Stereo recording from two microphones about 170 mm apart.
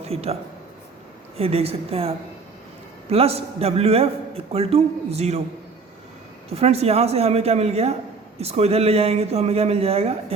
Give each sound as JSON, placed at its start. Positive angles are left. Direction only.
{"t": 0.0, "sound": "a man's voice", "side_deg": -35}
{"t": 1.4, "sound": "a man's voice", "side_deg": -35}
{"t": 6.5, "sound": "a man's voice", "side_deg": -40}